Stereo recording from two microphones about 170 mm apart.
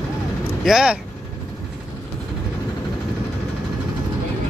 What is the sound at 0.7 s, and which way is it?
Speech, 5° right (ahead or behind).